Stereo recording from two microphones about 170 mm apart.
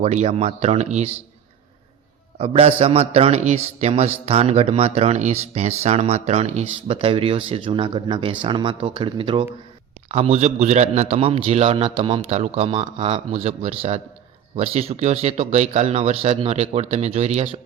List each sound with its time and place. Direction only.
0.0 s speech: 40° right (ahead or behind)
2.4 s speech: 35° right (ahead or behind)